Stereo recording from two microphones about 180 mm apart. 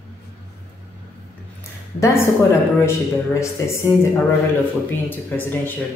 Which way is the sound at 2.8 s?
15° left (ahead or behind).